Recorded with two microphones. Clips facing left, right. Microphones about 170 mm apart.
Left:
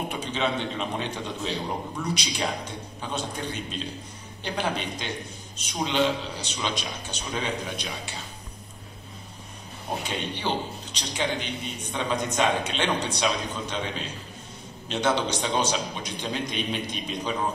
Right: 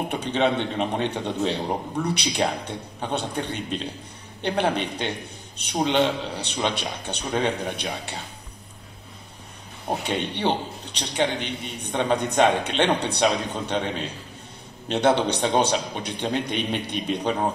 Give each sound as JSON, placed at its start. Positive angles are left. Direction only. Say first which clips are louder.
{"t": 0.1, "sound": "a man's voice", "louder": "right 8 dB", "side_deg": -60}
{"t": 10.0, "sound": "a man's voice", "louder": "right 6 dB", "side_deg": -65}